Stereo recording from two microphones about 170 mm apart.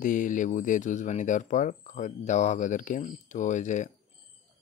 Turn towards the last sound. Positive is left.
turn(degrees=45)  # may be behind; listen again after turning